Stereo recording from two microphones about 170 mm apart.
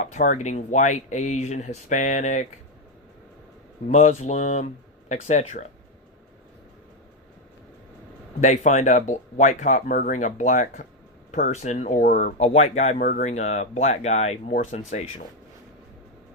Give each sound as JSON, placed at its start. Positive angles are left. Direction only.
{"t": 0.0, "sound": "speech", "side_deg": 45}
{"t": 3.8, "sound": "speech", "side_deg": 40}
{"t": 8.4, "sound": "speech", "side_deg": 45}
{"t": 12.4, "sound": "speech", "side_deg": 40}
{"t": 13.0, "sound": "speech", "side_deg": 55}
{"t": 13.3, "sound": "speech", "side_deg": 40}